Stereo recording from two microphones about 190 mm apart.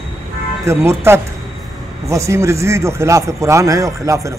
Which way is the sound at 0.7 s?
15° right (ahead or behind).